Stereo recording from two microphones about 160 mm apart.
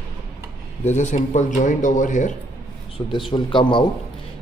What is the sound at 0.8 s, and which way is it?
A man's voice, 45° left (ahead or behind).